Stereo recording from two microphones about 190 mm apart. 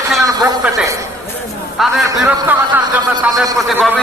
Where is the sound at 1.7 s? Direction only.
Centre (ahead or behind).